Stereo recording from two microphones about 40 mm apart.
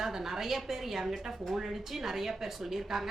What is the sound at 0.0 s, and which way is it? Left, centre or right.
A woman's voice, centre.